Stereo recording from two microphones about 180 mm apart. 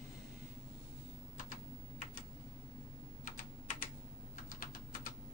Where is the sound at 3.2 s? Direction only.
45° left (ahead or behind).